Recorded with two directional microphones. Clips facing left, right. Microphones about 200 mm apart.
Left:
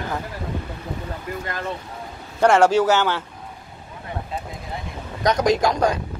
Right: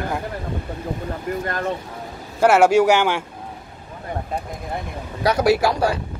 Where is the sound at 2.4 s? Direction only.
10° right (ahead or behind).